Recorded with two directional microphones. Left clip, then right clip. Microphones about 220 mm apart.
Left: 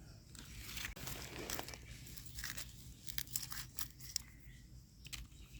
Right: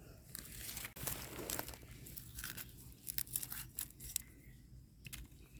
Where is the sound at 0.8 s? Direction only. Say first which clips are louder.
Left 1 dB; 40° right (ahead or behind).